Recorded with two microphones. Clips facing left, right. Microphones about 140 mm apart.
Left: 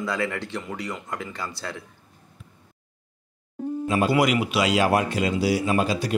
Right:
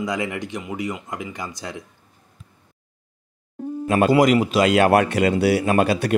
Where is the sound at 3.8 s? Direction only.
60° right (ahead or behind).